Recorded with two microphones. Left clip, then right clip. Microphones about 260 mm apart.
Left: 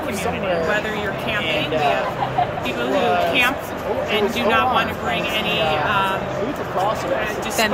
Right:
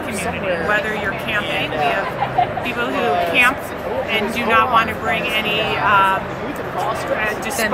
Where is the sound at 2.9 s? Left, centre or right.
Centre.